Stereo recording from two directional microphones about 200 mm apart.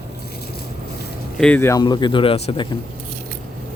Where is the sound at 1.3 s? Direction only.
5° left (ahead or behind); by 2.6 s 25° left (ahead or behind).